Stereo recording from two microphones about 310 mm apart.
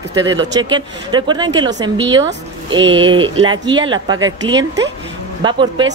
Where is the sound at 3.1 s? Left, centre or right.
Centre.